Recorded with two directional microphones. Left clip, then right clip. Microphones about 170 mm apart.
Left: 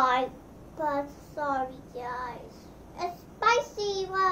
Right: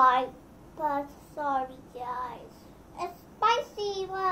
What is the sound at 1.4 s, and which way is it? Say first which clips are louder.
Child singing: even; centre (ahead or behind).